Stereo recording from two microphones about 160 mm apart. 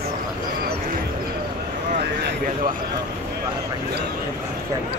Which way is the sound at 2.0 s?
60° right (ahead or behind).